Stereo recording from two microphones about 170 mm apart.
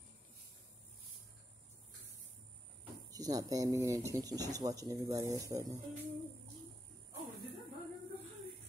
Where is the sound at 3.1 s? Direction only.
20° right (ahead or behind).